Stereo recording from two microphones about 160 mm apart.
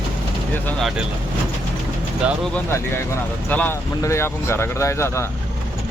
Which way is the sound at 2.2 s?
5° left (ahead or behind).